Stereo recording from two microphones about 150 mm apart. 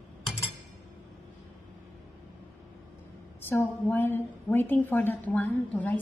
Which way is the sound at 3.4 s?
15° left (ahead or behind).